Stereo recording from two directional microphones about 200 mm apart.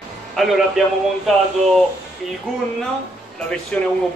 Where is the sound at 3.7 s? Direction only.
5° left (ahead or behind).